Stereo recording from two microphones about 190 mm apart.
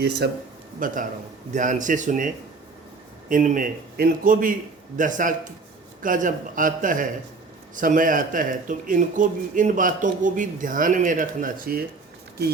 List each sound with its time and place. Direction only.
0.0 s speech: 60° right (ahead or behind)
0.8 s speech: 45° right (ahead or behind)